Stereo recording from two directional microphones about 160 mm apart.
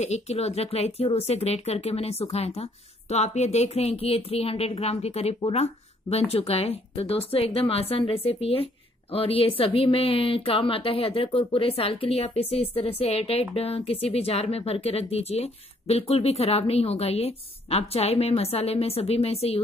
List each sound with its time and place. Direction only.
0.0 s speech: 45° left (ahead or behind)